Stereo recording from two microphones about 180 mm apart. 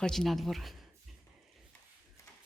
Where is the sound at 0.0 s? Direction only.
Centre (ahead or behind).